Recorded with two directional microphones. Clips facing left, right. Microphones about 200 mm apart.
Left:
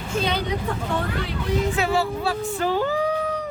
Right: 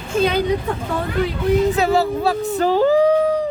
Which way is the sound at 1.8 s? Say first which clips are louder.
Right 5 dB; 40° right (ahead or behind).